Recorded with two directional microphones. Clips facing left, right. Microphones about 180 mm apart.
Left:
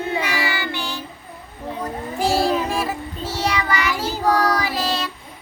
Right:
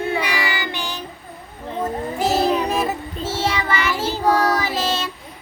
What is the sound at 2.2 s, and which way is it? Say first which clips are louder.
Child singing: even; 20° right (ahead or behind).